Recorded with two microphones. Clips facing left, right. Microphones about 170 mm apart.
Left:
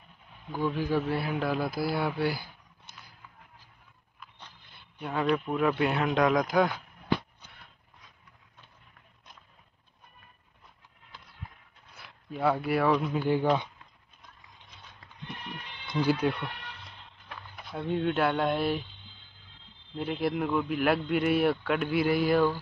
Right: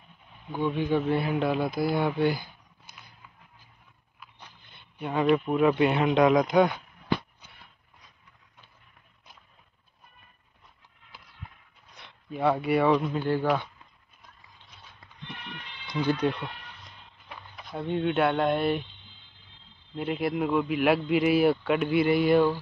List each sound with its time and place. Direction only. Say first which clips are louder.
0.5 s a man's voice: right 2 dB; 5° left (ahead or behind)
4.9 s a man's voice: right 4 dB; 5° right (ahead or behind)
11.9 s speech: right 2 dB; centre (ahead or behind)
16.0 s speech: even; 5° left (ahead or behind)
17.6 s a man's voice: right 1 dB; centre (ahead or behind)
20.0 s a man's voice: right 2 dB; centre (ahead or behind)